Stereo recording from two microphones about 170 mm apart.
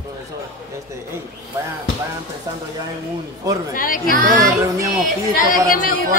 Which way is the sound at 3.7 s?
55° left (ahead or behind).